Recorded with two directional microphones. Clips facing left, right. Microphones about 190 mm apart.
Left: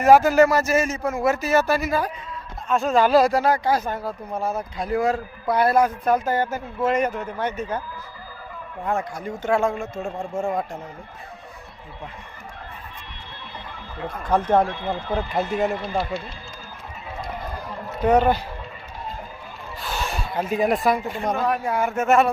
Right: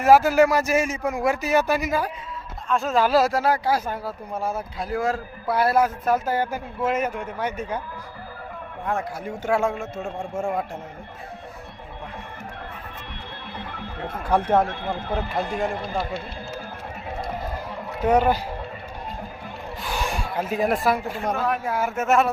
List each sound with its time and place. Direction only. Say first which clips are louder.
0.0 s speech: left 1 dB; 5° right (ahead or behind)
2.6 s speech: left 2 dB; centre (ahead or behind)
8.8 s speech: left 2 dB; centre (ahead or behind)
13.7 s music: left 1 dB; 60° right (ahead or behind)
14.3 s speech: left 1 dB; 10° right (ahead or behind)
14.7 s speech: left 1 dB; 55° right (ahead or behind)
15.5 s speech: left 5 dB; 5° left (ahead or behind)
18.0 s speech: left 1 dB; 10° right (ahead or behind)
19.8 s speech: even; 15° right (ahead or behind)